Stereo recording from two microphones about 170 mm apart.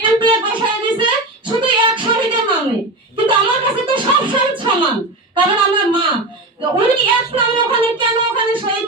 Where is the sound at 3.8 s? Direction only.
30° right (ahead or behind).